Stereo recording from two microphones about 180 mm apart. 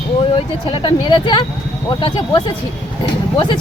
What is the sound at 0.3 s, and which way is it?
Speech, 30° left (ahead or behind).